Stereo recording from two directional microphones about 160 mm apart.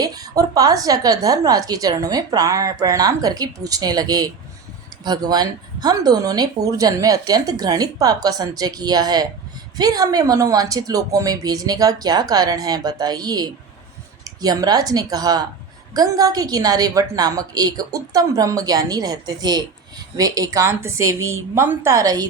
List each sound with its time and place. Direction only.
0.0 s a woman's voice: 25° right (ahead or behind)